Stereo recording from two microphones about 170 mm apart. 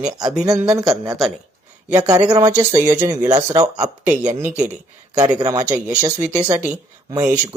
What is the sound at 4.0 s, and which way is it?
Speech, 10° right (ahead or behind).